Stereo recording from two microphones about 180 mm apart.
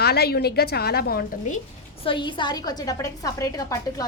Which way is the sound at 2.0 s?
25° left (ahead or behind).